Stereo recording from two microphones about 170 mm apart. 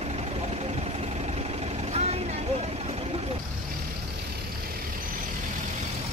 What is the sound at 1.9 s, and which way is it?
Vehicle, 40° right (ahead or behind).